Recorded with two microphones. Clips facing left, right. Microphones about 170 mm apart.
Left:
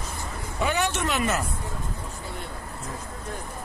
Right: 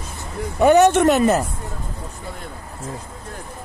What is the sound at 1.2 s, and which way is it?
Speech, 40° right (ahead or behind).